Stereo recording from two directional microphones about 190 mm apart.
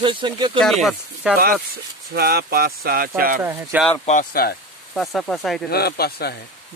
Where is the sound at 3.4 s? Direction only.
10° right (ahead or behind).